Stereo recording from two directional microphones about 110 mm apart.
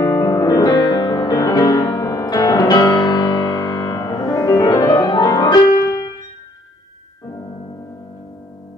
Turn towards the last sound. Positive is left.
turn(degrees=35)  # may be behind; listen again after turning